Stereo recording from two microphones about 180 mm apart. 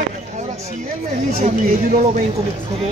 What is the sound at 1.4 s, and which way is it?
Speech, 40° right (ahead or behind).